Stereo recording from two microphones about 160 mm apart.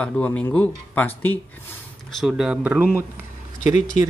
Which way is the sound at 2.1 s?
Centre (ahead or behind).